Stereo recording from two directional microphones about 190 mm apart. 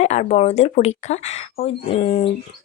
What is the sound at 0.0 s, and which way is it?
Speech, 35° left (ahead or behind).